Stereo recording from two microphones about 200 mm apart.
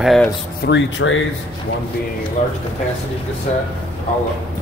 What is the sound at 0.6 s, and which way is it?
Speech, 65° left (ahead or behind).